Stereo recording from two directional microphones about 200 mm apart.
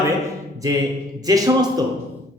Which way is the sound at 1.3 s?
20° right (ahead or behind).